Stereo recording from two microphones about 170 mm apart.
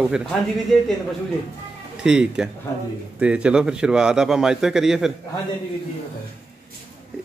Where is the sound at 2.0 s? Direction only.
5° right (ahead or behind).